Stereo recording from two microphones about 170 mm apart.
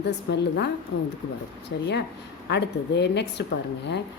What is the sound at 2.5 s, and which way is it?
Speech, 85° left.